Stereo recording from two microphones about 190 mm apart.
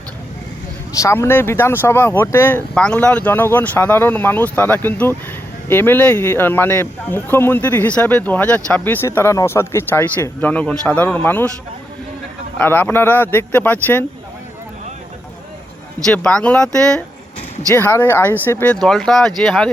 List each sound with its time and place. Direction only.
0.9 s speech: 15° left (ahead or behind)
12.5 s speech: 10° left (ahead or behind)
16.0 s speech: 5° left (ahead or behind)